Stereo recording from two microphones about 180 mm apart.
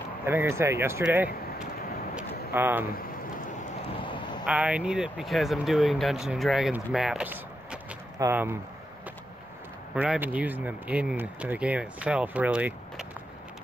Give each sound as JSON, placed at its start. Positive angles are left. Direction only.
{"t": 0.2, "sound": "speech", "side_deg": -15}
{"t": 2.5, "sound": "speech", "side_deg": -10}
{"t": 3.9, "sound": "a sound", "side_deg": 25}
{"t": 4.5, "sound": "speech", "side_deg": -5}
{"t": 9.9, "sound": "speech", "side_deg": -10}